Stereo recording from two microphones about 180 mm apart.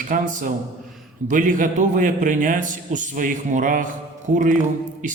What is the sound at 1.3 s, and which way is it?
A man's voice, 45° right (ahead or behind).